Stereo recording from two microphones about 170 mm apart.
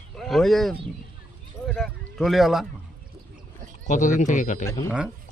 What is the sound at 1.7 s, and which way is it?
Speech, centre (ahead or behind).